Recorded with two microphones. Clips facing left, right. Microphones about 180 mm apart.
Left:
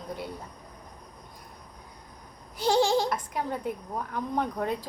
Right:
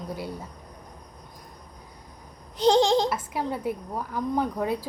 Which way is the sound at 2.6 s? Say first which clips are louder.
Right 4 dB; 20° right (ahead or behind).